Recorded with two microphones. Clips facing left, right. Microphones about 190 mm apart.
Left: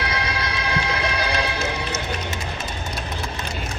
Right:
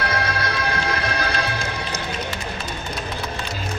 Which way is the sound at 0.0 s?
50° right (ahead or behind).